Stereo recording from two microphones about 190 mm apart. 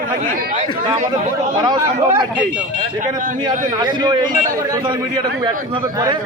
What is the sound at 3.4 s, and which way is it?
A man's voice, 25° right (ahead or behind).